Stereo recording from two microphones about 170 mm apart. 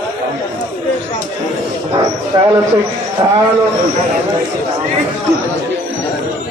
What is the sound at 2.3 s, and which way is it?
Speech, 20° right (ahead or behind).